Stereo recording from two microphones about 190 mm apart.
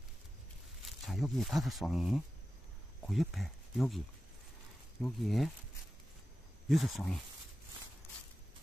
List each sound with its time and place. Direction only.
0.8 s speech: centre (ahead or behind)
5.0 s speech: centre (ahead or behind)
6.7 s speech: centre (ahead or behind)